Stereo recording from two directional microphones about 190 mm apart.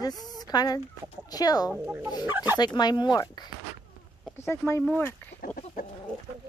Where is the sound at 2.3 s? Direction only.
10° right (ahead or behind).